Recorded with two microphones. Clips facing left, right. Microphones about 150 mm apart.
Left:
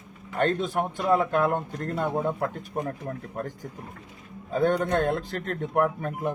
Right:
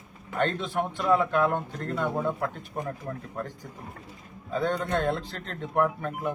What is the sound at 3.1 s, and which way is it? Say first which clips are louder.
Speech: left 2 dB; 45° left (ahead or behind).